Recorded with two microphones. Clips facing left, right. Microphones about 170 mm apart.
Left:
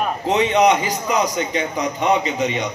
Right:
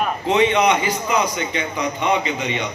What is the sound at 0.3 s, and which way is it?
A man's voice, 40° left (ahead or behind).